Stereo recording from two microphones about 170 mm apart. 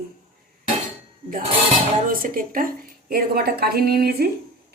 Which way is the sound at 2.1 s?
55° right (ahead or behind).